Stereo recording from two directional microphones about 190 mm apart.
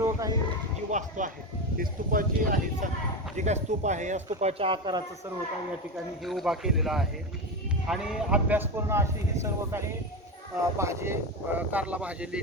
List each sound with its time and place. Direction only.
0.0 s a sound: 15° right (ahead or behind)
0.9 s speech: 40° right (ahead or behind); by 5.0 s 25° right (ahead or behind)
6.2 s speech: centre (ahead or behind)